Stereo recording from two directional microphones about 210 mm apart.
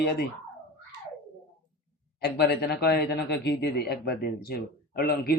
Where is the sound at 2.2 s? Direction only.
50° left (ahead or behind).